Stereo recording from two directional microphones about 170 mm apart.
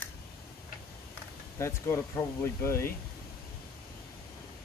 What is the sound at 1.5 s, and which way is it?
Speech, 15° left (ahead or behind).